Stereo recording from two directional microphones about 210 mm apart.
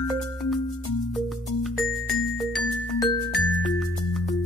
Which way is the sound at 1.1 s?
Centre (ahead or behind).